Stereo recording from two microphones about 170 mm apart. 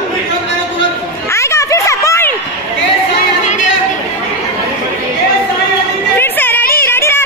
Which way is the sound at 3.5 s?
45° left (ahead or behind).